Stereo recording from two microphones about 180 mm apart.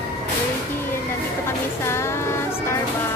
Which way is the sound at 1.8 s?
15° left (ahead or behind).